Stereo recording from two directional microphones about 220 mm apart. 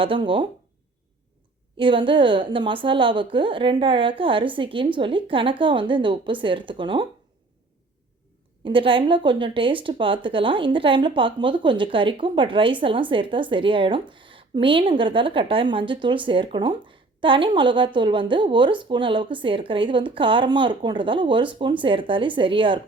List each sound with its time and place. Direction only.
0.0 s speech: 25° right (ahead or behind)
1.7 s speech: 25° right (ahead or behind)
8.6 s speech: 25° right (ahead or behind)